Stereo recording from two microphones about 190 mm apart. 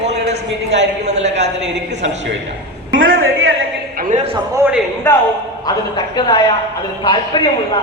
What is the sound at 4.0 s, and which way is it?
Speech, 40° right (ahead or behind).